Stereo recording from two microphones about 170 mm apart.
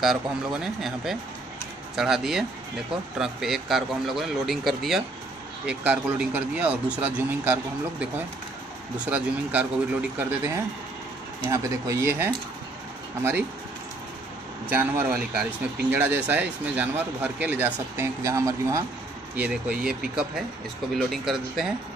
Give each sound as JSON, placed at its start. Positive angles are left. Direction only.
{"t": 0.0, "sound": "speech", "side_deg": 0}
{"t": 14.7, "sound": "speech", "side_deg": -10}
{"t": 19.3, "sound": "speech", "side_deg": -10}